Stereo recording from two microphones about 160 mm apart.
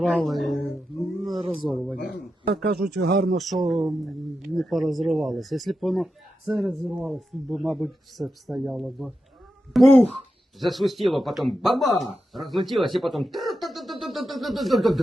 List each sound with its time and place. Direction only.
0.0 s a sound: centre (ahead or behind)
1.2 s wild animals: centre (ahead or behind)
1.6 s speech: centre (ahead or behind)
2.9 s speech: 80° right
3.3 s speech: centre (ahead or behind)